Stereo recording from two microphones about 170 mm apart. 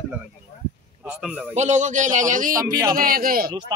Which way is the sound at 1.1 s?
5° right (ahead or behind).